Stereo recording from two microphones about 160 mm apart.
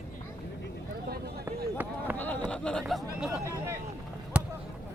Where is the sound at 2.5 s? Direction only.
5° left (ahead or behind).